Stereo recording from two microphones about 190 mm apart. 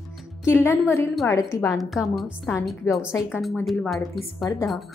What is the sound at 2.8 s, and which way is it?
Speech, 15° left (ahead or behind).